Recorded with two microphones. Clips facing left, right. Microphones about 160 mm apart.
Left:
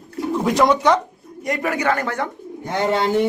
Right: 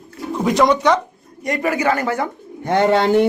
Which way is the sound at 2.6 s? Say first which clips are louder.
Right 5 dB; 60° right (ahead or behind).